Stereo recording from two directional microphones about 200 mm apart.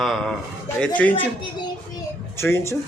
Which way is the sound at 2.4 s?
15° left (ahead or behind).